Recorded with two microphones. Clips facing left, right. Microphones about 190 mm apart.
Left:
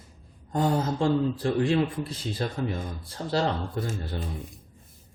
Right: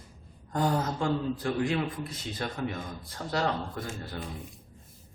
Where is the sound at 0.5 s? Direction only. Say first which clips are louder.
Left 3 dB; 25° left (ahead or behind).